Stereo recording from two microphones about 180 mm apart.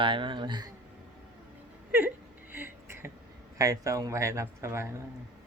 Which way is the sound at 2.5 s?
10° right (ahead or behind).